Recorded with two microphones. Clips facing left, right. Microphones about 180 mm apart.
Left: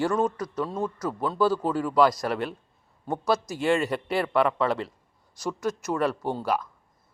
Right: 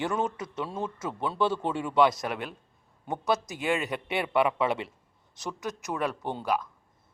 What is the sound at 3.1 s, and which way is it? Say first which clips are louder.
Speech: left 3 dB; 20° right (ahead or behind).